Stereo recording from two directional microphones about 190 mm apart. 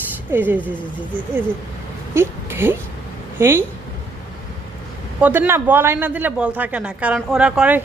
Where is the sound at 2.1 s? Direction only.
15° right (ahead or behind).